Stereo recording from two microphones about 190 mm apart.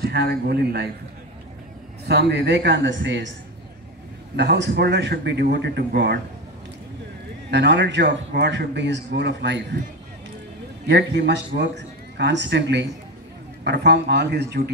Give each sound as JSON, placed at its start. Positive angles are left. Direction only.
{"t": 0.0, "sound": "a man's voice", "side_deg": -60}
{"t": 2.0, "sound": "a man's voice", "side_deg": -65}
{"t": 4.4, "sound": "a man's voice", "side_deg": -60}
{"t": 7.5, "sound": "a man's voice", "side_deg": -65}
{"t": 10.9, "sound": "a man's voice", "side_deg": -60}